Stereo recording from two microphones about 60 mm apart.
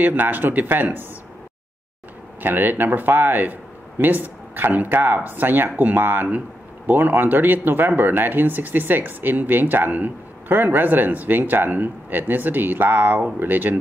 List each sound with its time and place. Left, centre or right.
0.0 s speech: right
2.4 s speech: right